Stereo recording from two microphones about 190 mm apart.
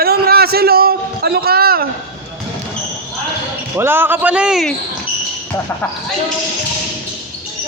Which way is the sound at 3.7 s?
10° right (ahead or behind).